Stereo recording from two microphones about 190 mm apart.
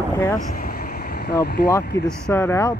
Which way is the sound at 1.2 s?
60° left (ahead or behind).